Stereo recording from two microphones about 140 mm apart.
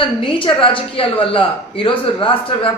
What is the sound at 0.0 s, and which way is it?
A woman's voice, 40° left (ahead or behind).